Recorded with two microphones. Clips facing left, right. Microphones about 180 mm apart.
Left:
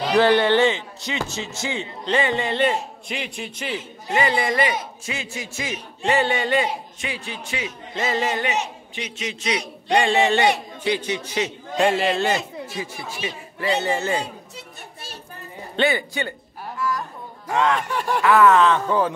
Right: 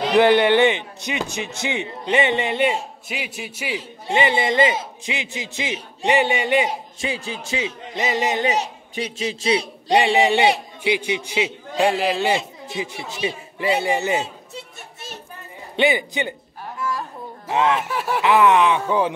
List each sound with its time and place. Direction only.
0.1 s a man's voice: 15° right (ahead or behind)
4.1 s a man's voice: 25° right (ahead or behind)
7.0 s speech: 30° right (ahead or behind)
7.9 s a man's voice: 15° right (ahead or behind)
8.5 s a man's voice: 35° right (ahead or behind)
9.9 s a man's voice: 15° right (ahead or behind)
17.6 s a man's voice: 5° right (ahead or behind)
18.2 s a man's voice: 20° right (ahead or behind)